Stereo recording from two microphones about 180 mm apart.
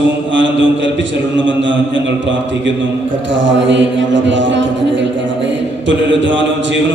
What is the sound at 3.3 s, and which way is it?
Mantra, 90° right.